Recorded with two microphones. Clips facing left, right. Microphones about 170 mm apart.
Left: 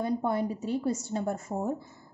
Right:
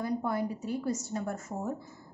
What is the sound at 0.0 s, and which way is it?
A woman's voice, 25° left (ahead or behind).